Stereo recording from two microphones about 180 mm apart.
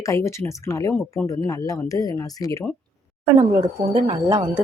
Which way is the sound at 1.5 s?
20° left (ahead or behind).